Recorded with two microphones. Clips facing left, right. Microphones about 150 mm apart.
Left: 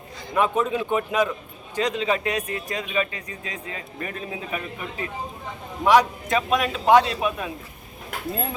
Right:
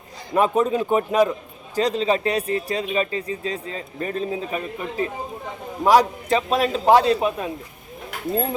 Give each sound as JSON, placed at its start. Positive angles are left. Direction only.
{"t": 0.3, "sound": "speech", "side_deg": -35}